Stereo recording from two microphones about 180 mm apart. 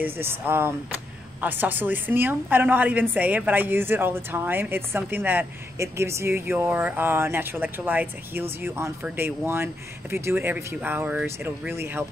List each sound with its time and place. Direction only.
0.0 s speech: 10° right (ahead or behind)